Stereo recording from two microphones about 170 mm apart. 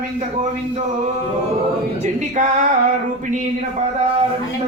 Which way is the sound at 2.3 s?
45° right (ahead or behind).